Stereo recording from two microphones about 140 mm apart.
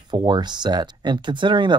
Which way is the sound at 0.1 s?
30° right (ahead or behind).